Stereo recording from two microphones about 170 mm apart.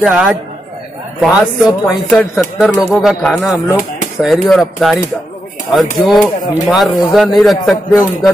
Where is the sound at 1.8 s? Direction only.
5° left (ahead or behind).